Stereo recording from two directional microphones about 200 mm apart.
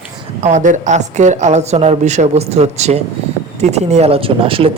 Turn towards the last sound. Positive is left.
turn(degrees=-25)  # may be behind; listen again after turning